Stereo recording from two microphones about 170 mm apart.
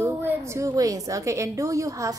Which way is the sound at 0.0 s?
15° right (ahead or behind).